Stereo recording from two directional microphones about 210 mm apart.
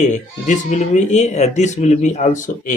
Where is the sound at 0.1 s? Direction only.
35° left (ahead or behind).